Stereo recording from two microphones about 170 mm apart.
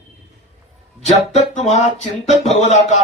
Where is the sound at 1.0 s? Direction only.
40° left (ahead or behind).